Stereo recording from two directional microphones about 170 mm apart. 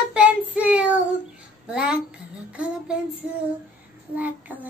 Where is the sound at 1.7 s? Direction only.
5° right (ahead or behind).